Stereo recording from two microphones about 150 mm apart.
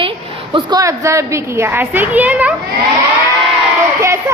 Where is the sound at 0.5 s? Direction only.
25° right (ahead or behind).